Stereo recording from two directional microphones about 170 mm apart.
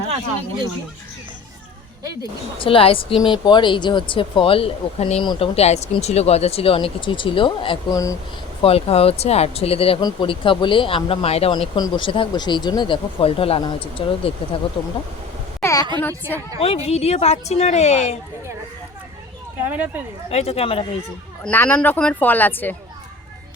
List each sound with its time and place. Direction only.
2.6 s speech: 30° left (ahead or behind)
7.9 s speech: 20° left (ahead or behind)
8.6 s speech: 35° left (ahead or behind)
15.6 s a woman's voice: 20° left (ahead or behind)
16.6 s speech: 35° left (ahead or behind)
19.5 s speech: 10° right (ahead or behind)
20.3 s speech: 35° left (ahead or behind)
21.4 s speech: 10° left (ahead or behind)